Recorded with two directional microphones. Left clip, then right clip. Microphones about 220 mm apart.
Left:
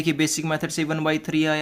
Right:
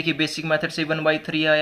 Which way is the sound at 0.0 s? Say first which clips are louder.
Even; 30° left (ahead or behind).